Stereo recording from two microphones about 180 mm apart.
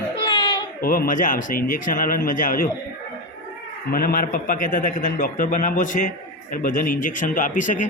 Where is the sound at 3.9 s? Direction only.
55° left (ahead or behind).